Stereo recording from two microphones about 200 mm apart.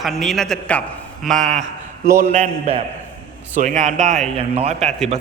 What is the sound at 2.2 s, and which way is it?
A man's voice, 35° right (ahead or behind).